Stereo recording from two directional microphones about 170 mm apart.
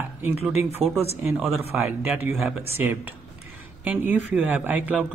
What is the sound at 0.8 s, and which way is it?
Speech, 35° right (ahead or behind).